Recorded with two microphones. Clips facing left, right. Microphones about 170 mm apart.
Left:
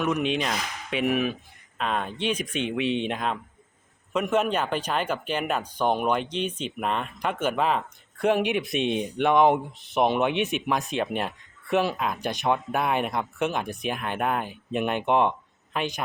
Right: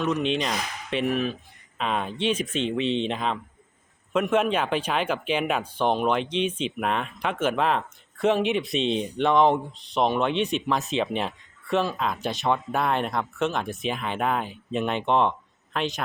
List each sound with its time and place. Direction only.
0.1 s speech: 5° left (ahead or behind)
1.8 s speech: centre (ahead or behind); by 10.2 s 15° left (ahead or behind)
10.2 s speech: 5° left (ahead or behind)